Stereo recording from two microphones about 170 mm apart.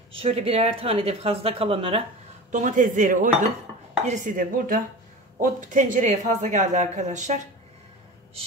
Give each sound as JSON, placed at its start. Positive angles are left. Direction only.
{"t": 0.1, "sound": "speech", "side_deg": -35}
{"t": 2.5, "sound": "speech", "side_deg": -45}